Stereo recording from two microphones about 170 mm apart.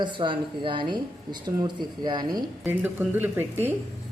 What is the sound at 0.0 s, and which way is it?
A woman's voice, 30° right (ahead or behind).